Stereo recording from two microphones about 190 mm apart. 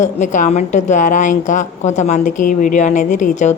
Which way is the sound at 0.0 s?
40° left (ahead or behind).